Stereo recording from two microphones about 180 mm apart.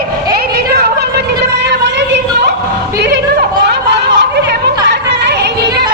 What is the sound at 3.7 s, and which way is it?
Chatter, 70° right (ahead or behind).